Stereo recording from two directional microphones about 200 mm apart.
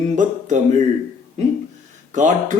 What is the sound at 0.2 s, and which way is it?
Speech, 40° right (ahead or behind).